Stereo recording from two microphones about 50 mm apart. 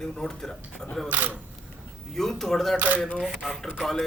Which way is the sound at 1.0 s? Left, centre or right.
Right.